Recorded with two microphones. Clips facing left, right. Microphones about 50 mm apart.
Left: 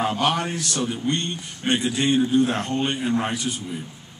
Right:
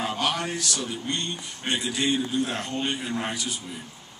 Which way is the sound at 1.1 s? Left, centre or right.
Centre.